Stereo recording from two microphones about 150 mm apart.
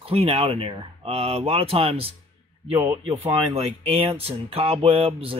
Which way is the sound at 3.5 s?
40° right (ahead or behind).